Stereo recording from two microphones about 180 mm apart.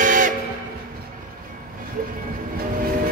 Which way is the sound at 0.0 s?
45° right (ahead or behind).